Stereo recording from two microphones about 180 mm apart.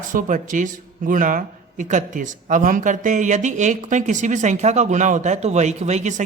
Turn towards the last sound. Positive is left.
turn(degrees=-40)  # may be behind; listen again after turning